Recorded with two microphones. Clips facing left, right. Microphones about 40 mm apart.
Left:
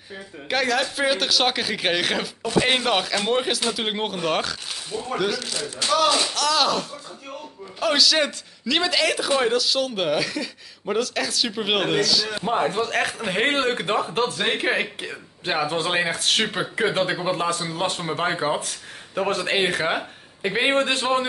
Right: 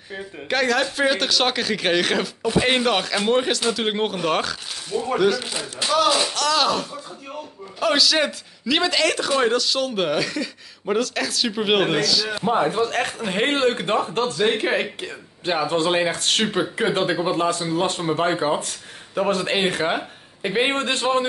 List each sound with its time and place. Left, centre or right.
0.5 s speech: centre
5.4 s speech: right
5.9 s speech: centre